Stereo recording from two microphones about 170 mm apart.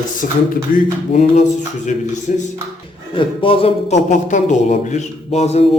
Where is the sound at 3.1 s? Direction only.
30° left (ahead or behind).